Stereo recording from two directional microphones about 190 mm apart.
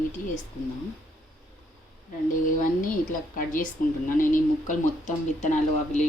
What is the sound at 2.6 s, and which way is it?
Speech, 45° left (ahead or behind).